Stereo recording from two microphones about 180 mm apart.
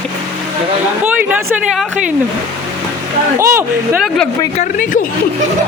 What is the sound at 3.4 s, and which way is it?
Speech, 15° right (ahead or behind).